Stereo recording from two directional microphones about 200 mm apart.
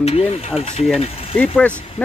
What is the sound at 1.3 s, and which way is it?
Speech, 10° left (ahead or behind).